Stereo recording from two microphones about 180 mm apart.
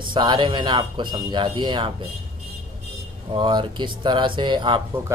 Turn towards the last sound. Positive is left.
turn(degrees=-25)  # may be behind; listen again after turning